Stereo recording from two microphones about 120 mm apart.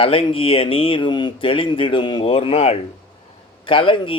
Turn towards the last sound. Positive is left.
turn(degrees=45)  # may be behind; listen again after turning